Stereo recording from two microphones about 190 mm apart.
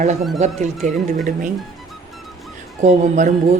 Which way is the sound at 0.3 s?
35° right (ahead or behind).